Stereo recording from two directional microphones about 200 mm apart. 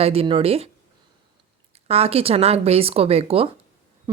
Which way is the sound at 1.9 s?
30° right (ahead or behind).